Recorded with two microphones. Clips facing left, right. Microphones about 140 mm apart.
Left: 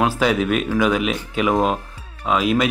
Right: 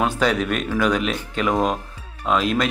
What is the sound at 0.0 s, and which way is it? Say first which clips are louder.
Speech: left 2 dB; 5° left (ahead or behind).